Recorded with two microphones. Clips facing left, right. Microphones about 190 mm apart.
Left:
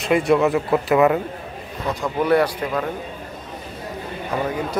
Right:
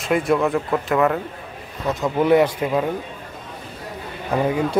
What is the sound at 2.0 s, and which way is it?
Speech, 20° right (ahead or behind).